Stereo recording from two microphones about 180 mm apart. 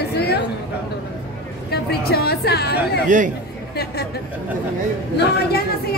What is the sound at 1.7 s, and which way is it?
Speech, 60° left (ahead or behind).